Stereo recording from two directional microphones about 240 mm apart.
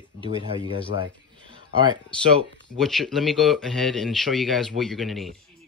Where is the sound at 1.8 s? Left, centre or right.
Centre.